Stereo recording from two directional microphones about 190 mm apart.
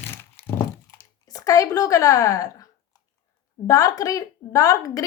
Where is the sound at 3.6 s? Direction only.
20° left (ahead or behind).